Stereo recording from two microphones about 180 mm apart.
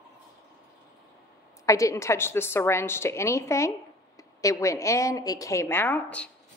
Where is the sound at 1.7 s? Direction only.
15° left (ahead or behind).